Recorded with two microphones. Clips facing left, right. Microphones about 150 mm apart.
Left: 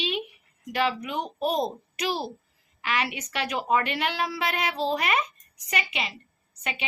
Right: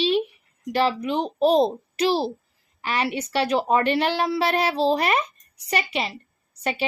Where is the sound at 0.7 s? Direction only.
30° right (ahead or behind).